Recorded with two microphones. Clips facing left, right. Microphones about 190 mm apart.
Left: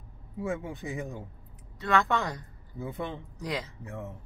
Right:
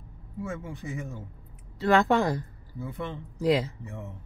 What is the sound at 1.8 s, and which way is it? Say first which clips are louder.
Speech: right 5 dB; 30° right (ahead or behind).